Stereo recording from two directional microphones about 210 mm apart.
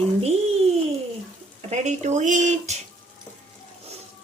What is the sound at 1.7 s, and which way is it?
Speech, 35° right (ahead or behind).